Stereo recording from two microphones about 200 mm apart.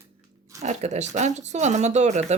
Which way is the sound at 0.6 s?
35° right (ahead or behind).